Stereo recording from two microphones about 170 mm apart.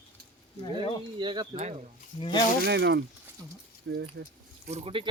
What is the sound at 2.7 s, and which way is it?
Speech, 85° right.